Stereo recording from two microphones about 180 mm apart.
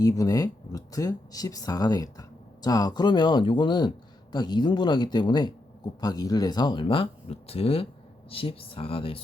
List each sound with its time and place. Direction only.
0.0 s speech: 20° left (ahead or behind)